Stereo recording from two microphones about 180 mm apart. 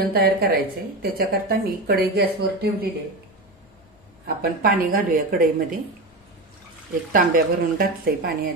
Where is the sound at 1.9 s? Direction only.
60° right (ahead or behind).